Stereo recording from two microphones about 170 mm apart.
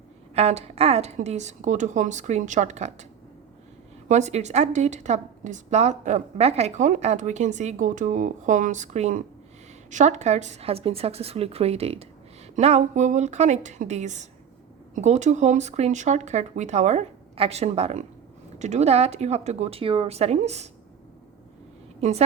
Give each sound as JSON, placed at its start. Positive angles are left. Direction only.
{"t": 0.3, "sound": "a woman's voice", "side_deg": -35}
{"t": 4.1, "sound": "a woman's voice", "side_deg": -40}